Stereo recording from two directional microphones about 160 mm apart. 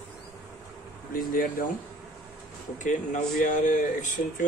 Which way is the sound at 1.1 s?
60° left (ahead or behind).